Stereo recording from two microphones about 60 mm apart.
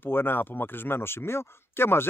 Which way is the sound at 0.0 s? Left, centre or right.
Left.